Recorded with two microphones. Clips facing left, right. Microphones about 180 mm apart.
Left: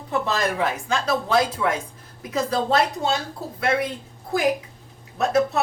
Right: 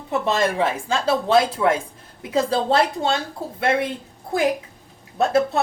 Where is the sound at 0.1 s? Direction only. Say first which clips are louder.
Right 3 dB; 25° right (ahead or behind).